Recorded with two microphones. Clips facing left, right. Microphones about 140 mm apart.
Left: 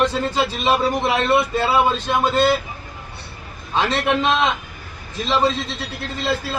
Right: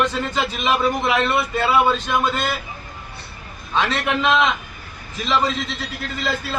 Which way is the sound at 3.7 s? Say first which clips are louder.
Left 2 dB; 30° left (ahead or behind).